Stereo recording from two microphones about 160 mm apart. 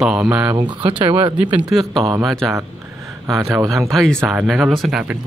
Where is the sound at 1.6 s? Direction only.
Centre (ahead or behind).